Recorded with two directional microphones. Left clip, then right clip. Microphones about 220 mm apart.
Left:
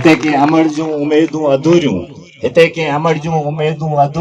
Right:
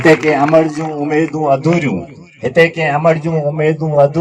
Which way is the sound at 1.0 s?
35° right (ahead or behind).